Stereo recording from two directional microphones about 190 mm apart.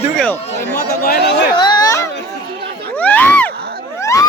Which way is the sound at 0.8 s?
50° left (ahead or behind).